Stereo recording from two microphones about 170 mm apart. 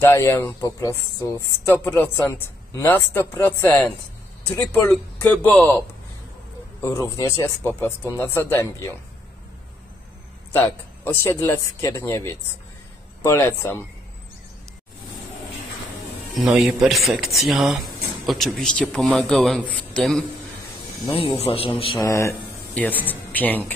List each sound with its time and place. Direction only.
0.0 s speech: 15° left (ahead or behind)
10.5 s speech: 10° left (ahead or behind)
16.3 s speech: centre (ahead or behind)
21.1 s a man's voice: 35° left (ahead or behind)
22.8 s speech: 10° left (ahead or behind)